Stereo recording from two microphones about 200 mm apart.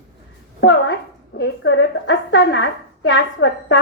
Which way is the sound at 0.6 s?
65° left (ahead or behind).